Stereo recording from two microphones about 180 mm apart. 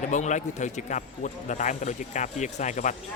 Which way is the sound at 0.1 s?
40° left (ahead or behind).